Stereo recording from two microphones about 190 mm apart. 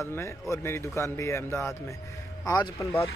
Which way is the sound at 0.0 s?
15° left (ahead or behind).